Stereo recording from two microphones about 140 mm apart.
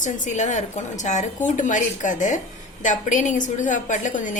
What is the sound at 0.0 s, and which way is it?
A woman's voice, 60° left (ahead or behind).